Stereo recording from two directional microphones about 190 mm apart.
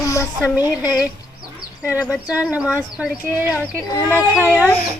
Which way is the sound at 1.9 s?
15° left (ahead or behind).